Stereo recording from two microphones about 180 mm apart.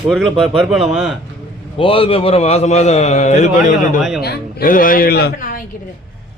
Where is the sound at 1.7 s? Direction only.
30° left (ahead or behind); by 5.6 s 50° left (ahead or behind).